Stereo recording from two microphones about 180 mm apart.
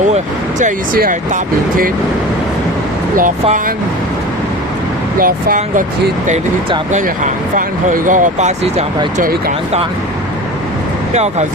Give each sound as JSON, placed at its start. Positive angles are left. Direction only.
{"t": 0.6, "sound": "speech", "side_deg": -50}
{"t": 5.2, "sound": "speech", "side_deg": -50}
{"t": 7.5, "sound": "speech", "side_deg": -45}
{"t": 9.1, "sound": "speech", "side_deg": -50}
{"t": 11.1, "sound": "speech", "side_deg": -35}